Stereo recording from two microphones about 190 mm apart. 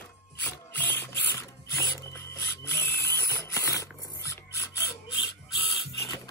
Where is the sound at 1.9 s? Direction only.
15° left (ahead or behind).